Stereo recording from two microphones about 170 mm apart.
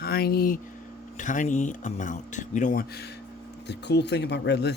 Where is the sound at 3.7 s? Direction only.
85° left.